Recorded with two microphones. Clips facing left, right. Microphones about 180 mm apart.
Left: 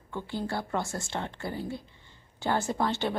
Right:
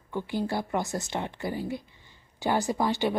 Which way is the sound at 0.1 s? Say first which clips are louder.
Right 3 dB; 15° right (ahead or behind).